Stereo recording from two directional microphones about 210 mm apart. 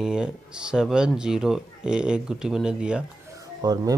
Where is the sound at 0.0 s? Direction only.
5° right (ahead or behind).